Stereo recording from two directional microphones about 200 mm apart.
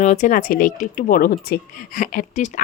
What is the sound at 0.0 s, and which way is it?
Speech, 40° left (ahead or behind).